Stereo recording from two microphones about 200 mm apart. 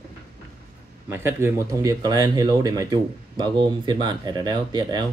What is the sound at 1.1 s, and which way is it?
Speech, 10° right (ahead or behind).